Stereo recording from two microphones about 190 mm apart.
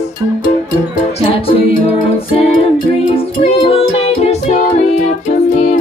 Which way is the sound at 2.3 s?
30° left (ahead or behind).